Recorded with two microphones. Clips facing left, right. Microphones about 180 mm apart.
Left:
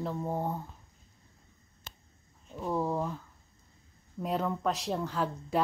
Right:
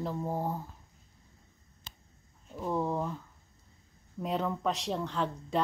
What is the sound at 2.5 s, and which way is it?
Speech, centre (ahead or behind).